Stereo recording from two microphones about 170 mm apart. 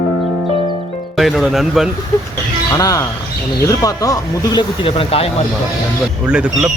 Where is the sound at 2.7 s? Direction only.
20° left (ahead or behind).